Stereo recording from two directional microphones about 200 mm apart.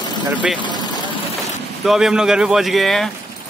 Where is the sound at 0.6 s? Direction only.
20° left (ahead or behind).